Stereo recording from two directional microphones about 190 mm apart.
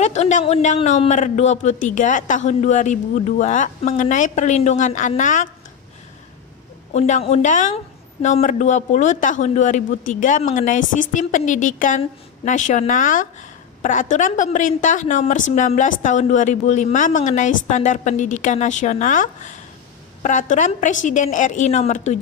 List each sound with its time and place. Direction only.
0.0 s a woman's voice: 35° left (ahead or behind)
6.9 s a woman's voice: 35° left (ahead or behind)